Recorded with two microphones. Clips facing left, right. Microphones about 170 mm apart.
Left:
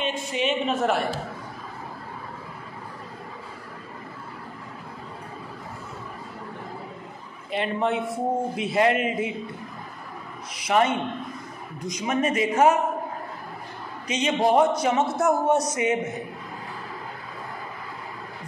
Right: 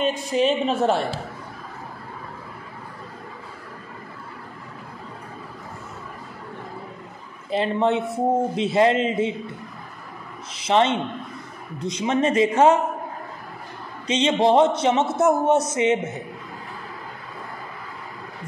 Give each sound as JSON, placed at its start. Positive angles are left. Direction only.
{"t": 0.0, "sound": "a woman's voice", "side_deg": -40}
{"t": 7.5, "sound": "a woman's voice", "side_deg": -30}
{"t": 10.5, "sound": "a man's voice", "side_deg": -25}
{"t": 14.0, "sound": "a man's voice", "side_deg": -30}